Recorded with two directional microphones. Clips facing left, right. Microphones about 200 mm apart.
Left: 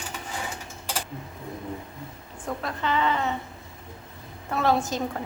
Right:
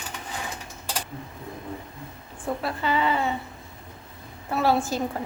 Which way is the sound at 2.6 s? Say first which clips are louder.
Even; 5° right (ahead or behind).